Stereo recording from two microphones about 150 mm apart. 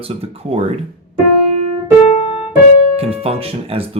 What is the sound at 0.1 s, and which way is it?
Speech, 40° right (ahead or behind).